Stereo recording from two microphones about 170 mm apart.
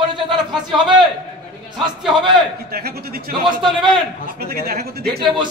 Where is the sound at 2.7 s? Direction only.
65° right (ahead or behind).